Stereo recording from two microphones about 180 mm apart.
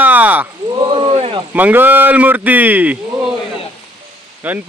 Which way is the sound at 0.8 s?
30° right (ahead or behind).